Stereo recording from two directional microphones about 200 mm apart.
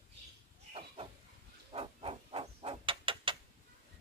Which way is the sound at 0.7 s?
30° right (ahead or behind).